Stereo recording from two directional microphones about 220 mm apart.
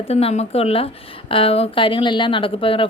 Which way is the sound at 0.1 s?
30° left (ahead or behind).